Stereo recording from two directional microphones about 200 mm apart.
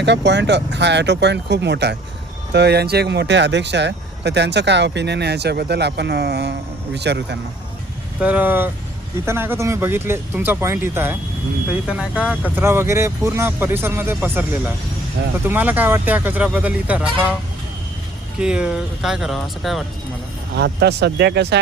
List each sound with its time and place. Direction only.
0.0 s speech: 60° right (ahead or behind)
8.2 s speech: 10° right (ahead or behind)
18.3 s speech: 5° right (ahead or behind)
20.6 s speech: 55° right (ahead or behind)